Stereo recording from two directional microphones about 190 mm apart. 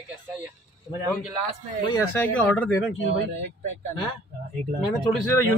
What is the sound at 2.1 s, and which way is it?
Speech, 10° left (ahead or behind).